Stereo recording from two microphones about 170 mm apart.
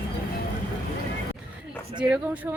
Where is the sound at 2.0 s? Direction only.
5° right (ahead or behind).